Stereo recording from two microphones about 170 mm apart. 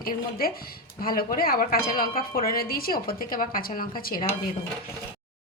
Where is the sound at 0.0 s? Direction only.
60° left (ahead or behind).